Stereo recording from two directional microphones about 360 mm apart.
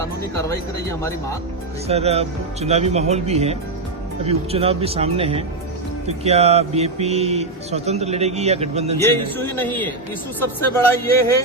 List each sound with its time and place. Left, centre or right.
0.0 s speech: centre
1.9 s speech: centre
9.0 s a man's voice: centre